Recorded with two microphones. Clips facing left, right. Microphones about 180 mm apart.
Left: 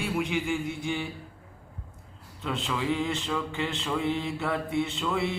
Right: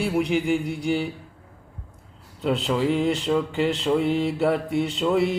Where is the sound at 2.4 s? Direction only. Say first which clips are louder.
Right 8 dB; 35° right (ahead or behind).